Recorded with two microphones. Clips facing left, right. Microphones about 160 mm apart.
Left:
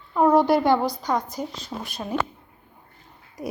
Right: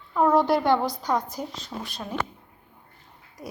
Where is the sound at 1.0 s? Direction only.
5° right (ahead or behind).